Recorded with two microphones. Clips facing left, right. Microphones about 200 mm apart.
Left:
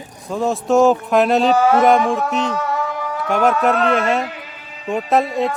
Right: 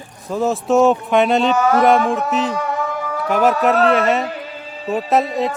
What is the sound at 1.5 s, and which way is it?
Speech, 30° left (ahead or behind).